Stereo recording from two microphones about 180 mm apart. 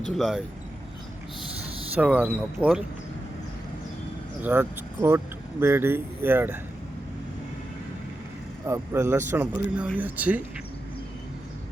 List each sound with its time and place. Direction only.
0.1 s speech: centre (ahead or behind)
2.0 s speech: 10° right (ahead or behind)
4.4 s speech: 10° right (ahead or behind)
8.6 s speech: 15° right (ahead or behind)